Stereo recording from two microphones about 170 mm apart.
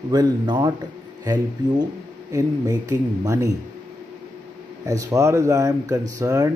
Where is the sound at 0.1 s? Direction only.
25° right (ahead or behind).